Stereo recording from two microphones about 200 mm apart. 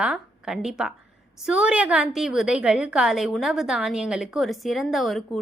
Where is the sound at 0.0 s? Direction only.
5° right (ahead or behind).